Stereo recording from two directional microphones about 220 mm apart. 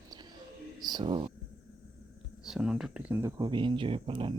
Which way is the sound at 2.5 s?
Centre (ahead or behind).